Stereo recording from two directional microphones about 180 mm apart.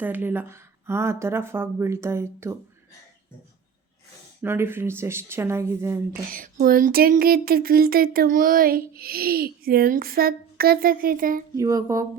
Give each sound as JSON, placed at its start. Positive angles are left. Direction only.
{"t": 0.0, "sound": "speech", "side_deg": -10}
{"t": 4.4, "sound": "speech", "side_deg": -10}
{"t": 6.3, "sound": "a sound", "side_deg": -50}
{"t": 11.5, "sound": "speech", "side_deg": -20}